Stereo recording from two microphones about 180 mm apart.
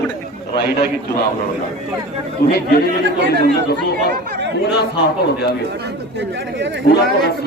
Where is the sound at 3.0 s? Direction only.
70° right (ahead or behind).